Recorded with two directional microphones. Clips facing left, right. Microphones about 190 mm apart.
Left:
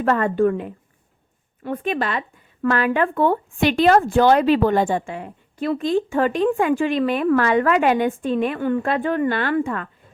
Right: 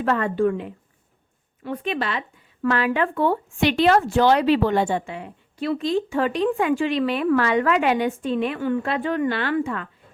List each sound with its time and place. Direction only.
0.0 s speech: 45° left (ahead or behind)